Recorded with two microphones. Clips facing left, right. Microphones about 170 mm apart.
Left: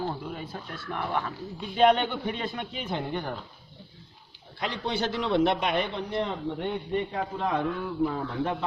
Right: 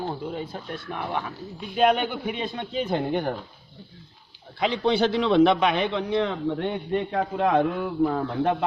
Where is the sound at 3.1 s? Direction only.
60° right (ahead or behind).